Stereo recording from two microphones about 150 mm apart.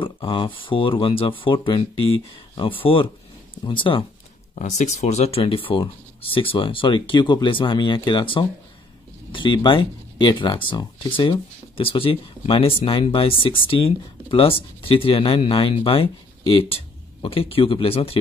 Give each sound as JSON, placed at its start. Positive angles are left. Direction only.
{"t": 0.0, "sound": "speech", "side_deg": 35}
{"t": 4.6, "sound": "speech", "side_deg": 50}